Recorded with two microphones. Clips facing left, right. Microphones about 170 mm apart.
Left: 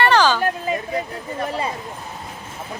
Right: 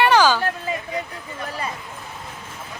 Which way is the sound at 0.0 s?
10° right (ahead or behind).